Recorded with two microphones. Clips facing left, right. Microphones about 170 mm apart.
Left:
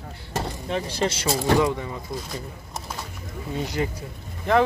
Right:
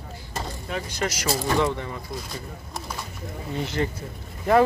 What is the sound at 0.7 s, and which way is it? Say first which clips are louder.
Speech: left 3 dB; 30° left (ahead or behind).